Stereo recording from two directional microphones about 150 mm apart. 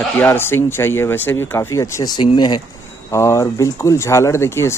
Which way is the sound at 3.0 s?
20° left (ahead or behind).